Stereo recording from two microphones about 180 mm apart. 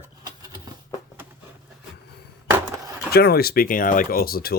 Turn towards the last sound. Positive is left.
turn(degrees=55)  # may be behind; listen again after turning